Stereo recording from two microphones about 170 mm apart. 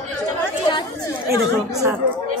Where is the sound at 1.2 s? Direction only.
15° right (ahead or behind).